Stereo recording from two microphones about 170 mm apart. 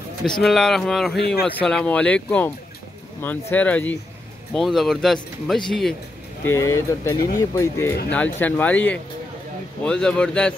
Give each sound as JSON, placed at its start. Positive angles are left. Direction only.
{"t": 0.2, "sound": "speech", "side_deg": 0}
{"t": 1.1, "sound": "speech", "side_deg": 75}
{"t": 1.4, "sound": "speech", "side_deg": 5}
{"t": 6.4, "sound": "speech", "side_deg": 15}